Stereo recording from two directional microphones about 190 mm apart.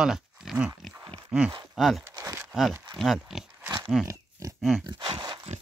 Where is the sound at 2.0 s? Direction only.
15° right (ahead or behind).